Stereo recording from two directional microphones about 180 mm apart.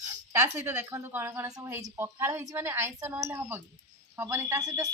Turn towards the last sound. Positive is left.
turn(degrees=-20)  # may be behind; listen again after turning